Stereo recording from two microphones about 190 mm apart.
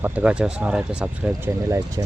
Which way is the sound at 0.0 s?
5° right (ahead or behind).